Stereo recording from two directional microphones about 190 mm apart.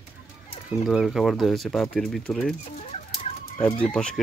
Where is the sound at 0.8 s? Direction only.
Centre (ahead or behind).